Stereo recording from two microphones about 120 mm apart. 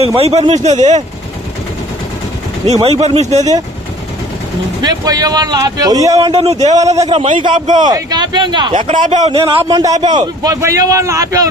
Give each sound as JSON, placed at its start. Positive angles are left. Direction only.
{"t": 0.0, "sound": "speech", "side_deg": -55}
{"t": 0.6, "sound": "speech", "side_deg": -80}
{"t": 2.6, "sound": "speech", "side_deg": -60}
{"t": 4.8, "sound": "speech", "side_deg": -30}
{"t": 6.6, "sound": "a man's voice", "side_deg": -70}
{"t": 7.3, "sound": "speech", "side_deg": -45}
{"t": 9.0, "sound": "a man's voice", "side_deg": -80}
{"t": 9.3, "sound": "a man's voice", "side_deg": -50}
{"t": 9.7, "sound": "a man's voice", "side_deg": -30}